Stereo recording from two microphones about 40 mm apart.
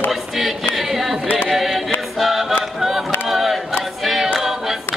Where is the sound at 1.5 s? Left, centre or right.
Centre.